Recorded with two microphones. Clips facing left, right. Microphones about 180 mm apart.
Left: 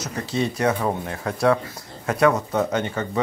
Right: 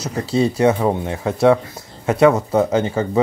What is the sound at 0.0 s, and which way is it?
Speech, 30° right (ahead or behind).